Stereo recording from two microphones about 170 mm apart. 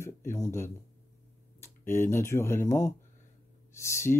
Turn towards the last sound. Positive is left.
turn(degrees=15)  # may be behind; listen again after turning